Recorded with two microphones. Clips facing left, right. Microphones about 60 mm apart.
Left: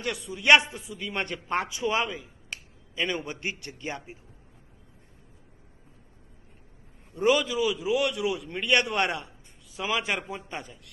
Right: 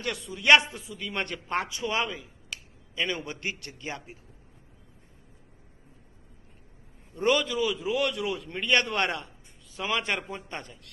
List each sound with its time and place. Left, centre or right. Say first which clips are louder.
0.0 s a man's voice: even; centre
7.2 s a man's voice: left 1 dB; centre